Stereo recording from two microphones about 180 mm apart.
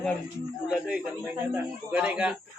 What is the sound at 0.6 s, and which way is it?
Speech, 5° right (ahead or behind).